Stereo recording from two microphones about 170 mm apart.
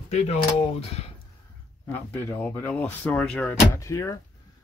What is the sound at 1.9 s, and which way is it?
Speech, 10° left (ahead or behind).